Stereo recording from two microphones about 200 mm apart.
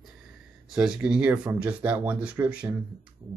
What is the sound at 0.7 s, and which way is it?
Speech, 5° right (ahead or behind).